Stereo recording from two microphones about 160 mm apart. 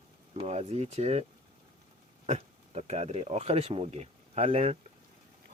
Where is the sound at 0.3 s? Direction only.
40° right (ahead or behind).